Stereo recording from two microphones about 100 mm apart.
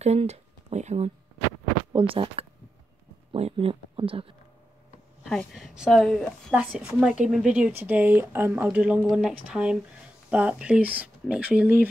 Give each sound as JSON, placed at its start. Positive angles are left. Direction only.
{"t": 0.0, "sound": "speech", "side_deg": -90}
{"t": 1.9, "sound": "speech", "side_deg": -60}
{"t": 3.3, "sound": "speech", "side_deg": -85}
{"t": 5.5, "sound": "a woman's voice", "side_deg": 0}
{"t": 6.5, "sound": "a woman's voice", "side_deg": -10}